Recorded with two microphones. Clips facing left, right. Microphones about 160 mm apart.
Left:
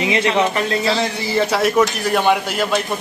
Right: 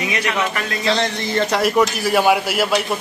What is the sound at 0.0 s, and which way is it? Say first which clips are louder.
Speech: left 5 dB; 25° left (ahead or behind).